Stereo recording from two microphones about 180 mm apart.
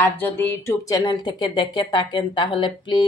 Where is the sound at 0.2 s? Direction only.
10° left (ahead or behind).